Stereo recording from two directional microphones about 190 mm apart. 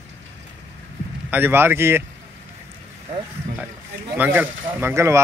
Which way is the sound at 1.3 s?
10° right (ahead or behind).